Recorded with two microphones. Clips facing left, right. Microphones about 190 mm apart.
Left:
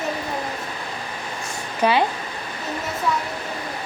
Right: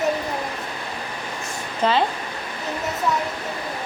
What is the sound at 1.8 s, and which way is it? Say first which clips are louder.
Speech: left 1 dB; 15° left (ahead or behind).